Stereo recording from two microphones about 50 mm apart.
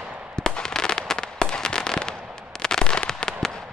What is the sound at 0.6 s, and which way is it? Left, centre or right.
Fireworks, centre.